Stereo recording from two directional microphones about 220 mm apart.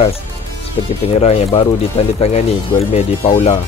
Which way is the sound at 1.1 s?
25° left (ahead or behind).